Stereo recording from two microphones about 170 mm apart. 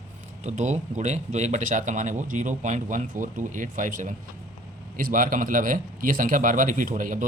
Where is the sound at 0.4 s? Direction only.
45° right (ahead or behind).